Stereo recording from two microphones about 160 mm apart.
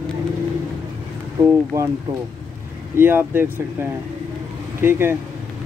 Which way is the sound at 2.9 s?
15° right (ahead or behind).